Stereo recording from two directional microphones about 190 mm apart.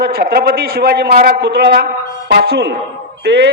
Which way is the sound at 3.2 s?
60° right (ahead or behind).